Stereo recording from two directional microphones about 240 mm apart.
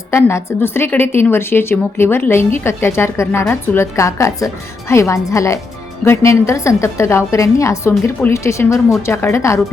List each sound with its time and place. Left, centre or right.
0.1 s a woman's voice: centre